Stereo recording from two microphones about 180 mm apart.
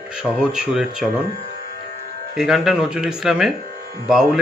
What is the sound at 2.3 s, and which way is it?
Speech, centre (ahead or behind).